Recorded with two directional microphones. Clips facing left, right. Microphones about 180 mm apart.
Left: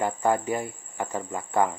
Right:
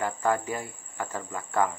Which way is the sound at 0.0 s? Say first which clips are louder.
Left 3 dB; 20° left (ahead or behind).